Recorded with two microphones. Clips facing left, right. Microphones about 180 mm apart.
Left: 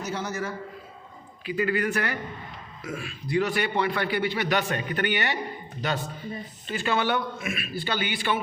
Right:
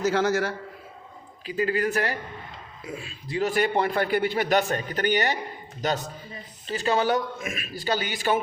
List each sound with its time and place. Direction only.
0.0 s a man's voice: 90° right
1.5 s a man's voice: 35° right (ahead or behind)
2.8 s a man's voice: 20° right (ahead or behind)
3.4 s a man's voice: 40° right (ahead or behind)
6.7 s a man's voice: 35° right (ahead or behind)